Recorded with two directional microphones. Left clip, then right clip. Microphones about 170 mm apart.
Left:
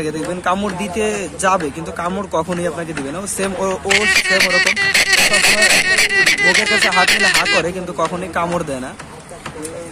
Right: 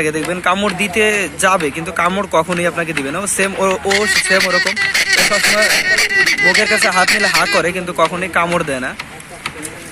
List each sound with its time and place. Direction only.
0.0 s a man's voice: 10° right (ahead or behind)
3.9 s speech: 30° left (ahead or behind)
7.5 s a man's voice: 10° right (ahead or behind)